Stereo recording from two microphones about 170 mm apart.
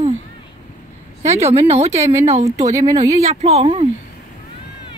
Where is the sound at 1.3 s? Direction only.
40° right (ahead or behind).